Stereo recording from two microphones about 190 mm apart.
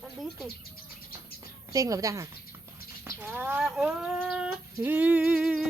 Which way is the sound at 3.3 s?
10° right (ahead or behind).